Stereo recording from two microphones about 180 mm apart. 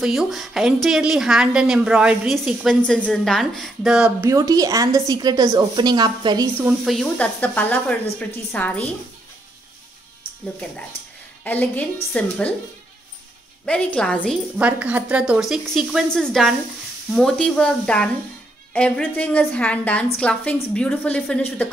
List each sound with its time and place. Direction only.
0.0 s a woman's voice: 5° right (ahead or behind)
4.2 s a woman's voice: 20° right (ahead or behind)
6.8 s speech: centre (ahead or behind)
11.4 s speech: 10° left (ahead or behind)
13.7 s a woman's voice: 5° left (ahead or behind)
14.6 s a woman's voice: 10° right (ahead or behind); by 21.6 s 10° left (ahead or behind)